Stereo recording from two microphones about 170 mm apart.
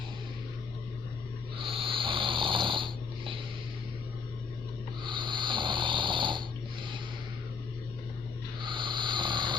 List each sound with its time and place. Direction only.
1.6 s snoring: 30° right (ahead or behind)
5.0 s snoring: 30° right (ahead or behind)
8.6 s snoring: 30° right (ahead or behind)